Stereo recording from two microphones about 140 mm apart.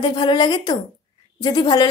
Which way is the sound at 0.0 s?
35° left (ahead or behind).